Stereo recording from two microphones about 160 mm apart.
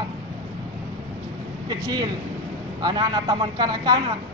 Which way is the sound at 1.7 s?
25° right (ahead or behind).